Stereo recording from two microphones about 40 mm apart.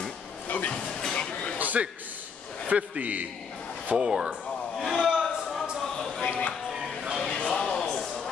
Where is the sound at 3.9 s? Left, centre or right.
Centre.